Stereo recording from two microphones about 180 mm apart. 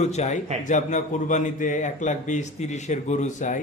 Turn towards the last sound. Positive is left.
turn(degrees=40)  # may be behind; listen again after turning